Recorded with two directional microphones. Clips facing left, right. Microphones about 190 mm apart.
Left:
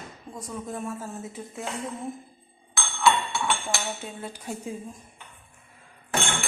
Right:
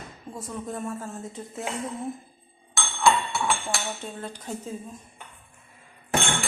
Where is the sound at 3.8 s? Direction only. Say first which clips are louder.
Even; 10° left (ahead or behind).